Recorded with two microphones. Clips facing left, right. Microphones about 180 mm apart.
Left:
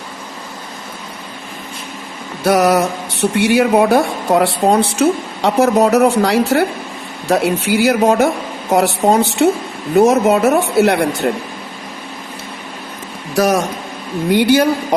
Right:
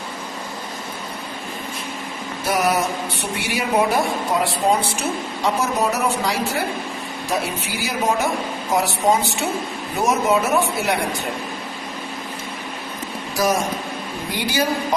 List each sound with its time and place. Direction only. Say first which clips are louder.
2.4 s speech: left 8 dB; 75° left (ahead or behind)
11.2 s speech: left 10 dB; 85° left
13.3 s a man's voice: left 6 dB; 70° left (ahead or behind)